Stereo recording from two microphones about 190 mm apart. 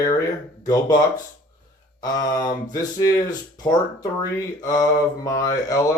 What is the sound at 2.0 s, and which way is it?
Mantra, 20° left (ahead or behind).